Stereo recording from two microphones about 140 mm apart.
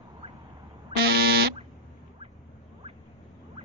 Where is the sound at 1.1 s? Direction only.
90° right.